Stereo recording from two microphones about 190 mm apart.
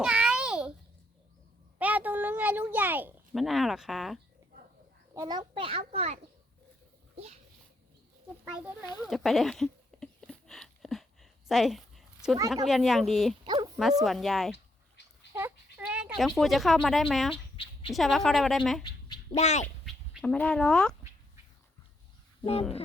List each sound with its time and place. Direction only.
0.0 s babbling: 5° right (ahead or behind)
1.8 s a sound: 10° right (ahead or behind)
5.1 s a child's voice: 20° right (ahead or behind)
8.4 s a child's voice: 5° right (ahead or behind)
9.0 s a sound: centre (ahead or behind)
12.6 s speech: centre (ahead or behind)
13.4 s speech: 20° right (ahead or behind)
14.0 s speech: centre (ahead or behind)
15.3 s speech: 10° right (ahead or behind)
17.3 s a sound: 25° left (ahead or behind)
17.9 s speech: centre (ahead or behind)
19.0 s bird: 20° left (ahead or behind)
19.4 s speech: 35° left (ahead or behind)
20.1 s speech: 5° left (ahead or behind)